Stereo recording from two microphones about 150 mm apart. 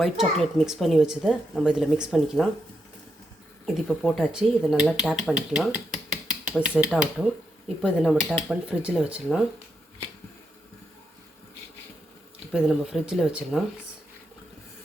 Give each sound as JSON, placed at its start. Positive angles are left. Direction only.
{"t": 0.0, "sound": "speech", "side_deg": 0}
{"t": 3.8, "sound": "speech", "side_deg": 5}
{"t": 12.5, "sound": "speech", "side_deg": -5}